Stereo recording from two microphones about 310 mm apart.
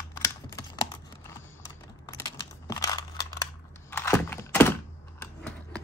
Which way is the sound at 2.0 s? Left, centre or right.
Centre.